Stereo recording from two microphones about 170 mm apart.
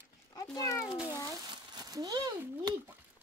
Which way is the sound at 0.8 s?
5° right (ahead or behind).